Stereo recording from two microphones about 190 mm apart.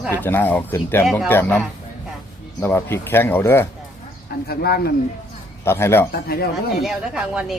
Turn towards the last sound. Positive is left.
turn(degrees=-5)  # may be behind; listen again after turning